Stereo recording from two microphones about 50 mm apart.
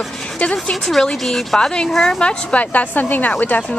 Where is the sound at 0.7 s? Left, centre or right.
Centre.